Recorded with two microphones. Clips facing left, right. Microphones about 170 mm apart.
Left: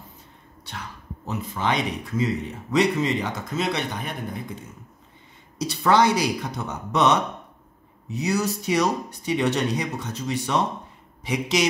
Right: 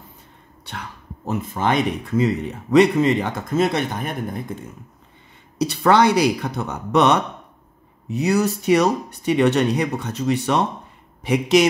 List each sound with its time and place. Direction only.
0.7 s speech: 55° right (ahead or behind)
5.7 s speech: 60° right (ahead or behind)